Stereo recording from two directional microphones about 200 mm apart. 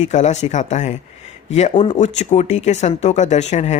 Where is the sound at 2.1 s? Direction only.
35° left (ahead or behind).